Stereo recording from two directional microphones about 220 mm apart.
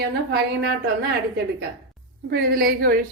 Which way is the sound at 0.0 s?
50° right (ahead or behind).